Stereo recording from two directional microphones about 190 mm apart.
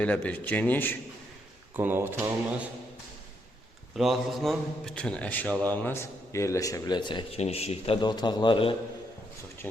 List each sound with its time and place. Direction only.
0.0 s a man's voice: 5° left (ahead or behind)
1.7 s speech: 10° right (ahead or behind)
3.9 s a man's voice: centre (ahead or behind); by 8.7 s 25° left (ahead or behind)